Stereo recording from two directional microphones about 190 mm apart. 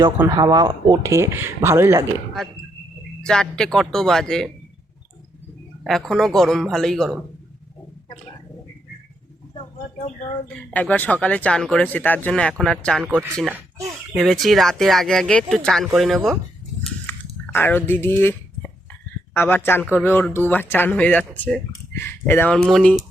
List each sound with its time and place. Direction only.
0.3 s speech: 20° right (ahead or behind)
3.2 s speech: 5° left (ahead or behind)
5.8 s speech: centre (ahead or behind)
10.0 s speech: 35° left (ahead or behind)
10.5 s speech: 5° left (ahead or behind)
13.1 s speech: 15° right (ahead or behind)
14.2 s speech: centre (ahead or behind)
17.1 s a sound: 10° left (ahead or behind)
19.3 s speech: 10° left (ahead or behind)